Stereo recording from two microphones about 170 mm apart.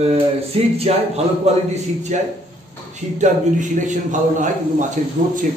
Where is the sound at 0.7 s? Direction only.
40° right (ahead or behind).